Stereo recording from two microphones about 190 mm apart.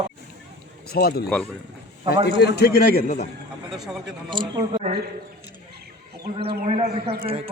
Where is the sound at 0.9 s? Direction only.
55° left (ahead or behind).